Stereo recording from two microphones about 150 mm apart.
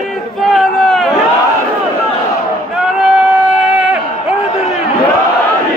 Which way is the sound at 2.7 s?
5° right (ahead or behind).